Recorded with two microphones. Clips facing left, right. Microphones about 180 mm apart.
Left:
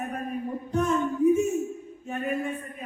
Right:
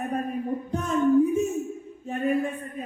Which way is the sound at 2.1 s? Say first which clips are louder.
Right 4 dB; 35° right (ahead or behind).